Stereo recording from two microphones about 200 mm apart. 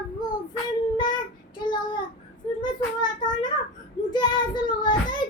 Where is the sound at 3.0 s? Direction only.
20° left (ahead or behind).